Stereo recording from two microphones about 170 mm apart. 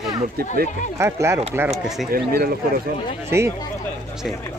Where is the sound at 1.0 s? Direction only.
15° right (ahead or behind).